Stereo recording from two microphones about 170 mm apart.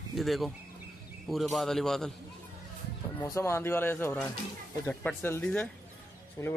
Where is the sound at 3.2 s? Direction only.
15° left (ahead or behind).